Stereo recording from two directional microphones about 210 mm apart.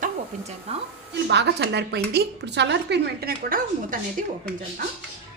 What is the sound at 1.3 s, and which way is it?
A woman's voice, 55° right (ahead or behind).